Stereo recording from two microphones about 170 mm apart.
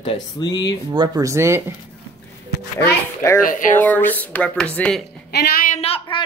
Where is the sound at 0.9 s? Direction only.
25° right (ahead or behind).